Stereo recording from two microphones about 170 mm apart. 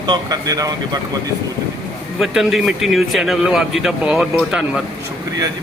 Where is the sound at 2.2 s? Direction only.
Centre (ahead or behind).